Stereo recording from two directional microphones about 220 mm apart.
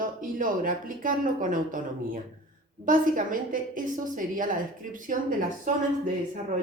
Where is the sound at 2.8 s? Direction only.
35° right (ahead or behind).